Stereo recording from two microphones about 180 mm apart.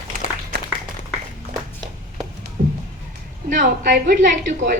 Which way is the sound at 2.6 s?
35° right (ahead or behind).